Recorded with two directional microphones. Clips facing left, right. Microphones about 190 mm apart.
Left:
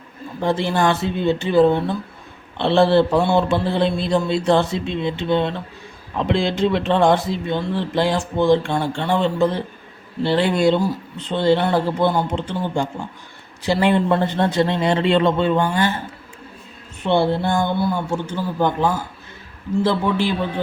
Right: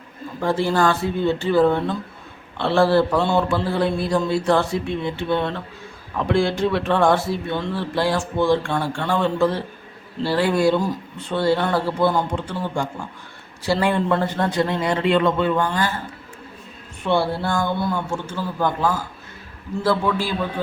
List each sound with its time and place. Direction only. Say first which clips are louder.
0.3 s speech: even; 20° left (ahead or behind)
17.0 s speech: left 3 dB; 20° left (ahead or behind)